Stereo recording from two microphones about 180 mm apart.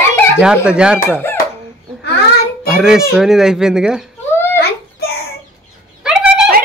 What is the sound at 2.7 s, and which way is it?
A child's voice, 5° right (ahead or behind).